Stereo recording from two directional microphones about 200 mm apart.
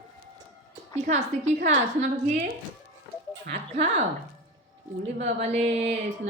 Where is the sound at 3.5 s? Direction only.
35° right (ahead or behind).